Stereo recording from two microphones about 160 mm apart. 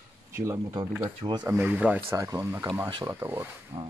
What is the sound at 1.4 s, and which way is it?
Speech, 15° right (ahead or behind).